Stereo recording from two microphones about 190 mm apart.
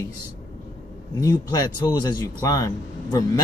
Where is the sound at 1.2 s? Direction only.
20° left (ahead or behind).